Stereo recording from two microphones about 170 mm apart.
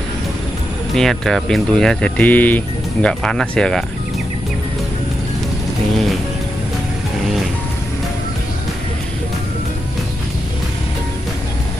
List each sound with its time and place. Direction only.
0.9 s speech: centre (ahead or behind)